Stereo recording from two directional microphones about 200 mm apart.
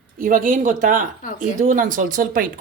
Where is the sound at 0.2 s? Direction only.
45° right (ahead or behind).